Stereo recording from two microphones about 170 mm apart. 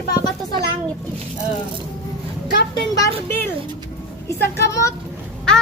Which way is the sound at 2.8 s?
15° left (ahead or behind).